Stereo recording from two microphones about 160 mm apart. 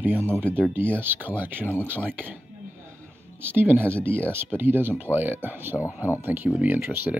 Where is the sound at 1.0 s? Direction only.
10° right (ahead or behind).